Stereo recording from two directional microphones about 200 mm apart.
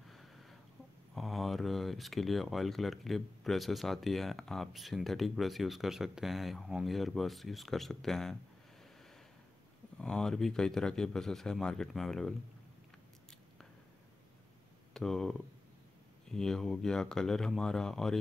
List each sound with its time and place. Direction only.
0.1 s a sound: centre (ahead or behind)
1.1 s speech: centre (ahead or behind)
9.9 s speech: 5° left (ahead or behind)
15.0 s speech: centre (ahead or behind)